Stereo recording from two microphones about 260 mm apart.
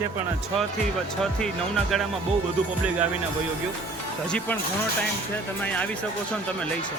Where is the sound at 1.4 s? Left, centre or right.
Centre.